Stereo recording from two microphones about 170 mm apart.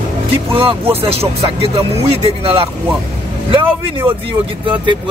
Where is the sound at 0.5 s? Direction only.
30° right (ahead or behind).